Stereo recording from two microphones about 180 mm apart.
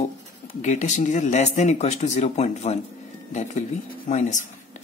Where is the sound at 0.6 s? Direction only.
40° left (ahead or behind).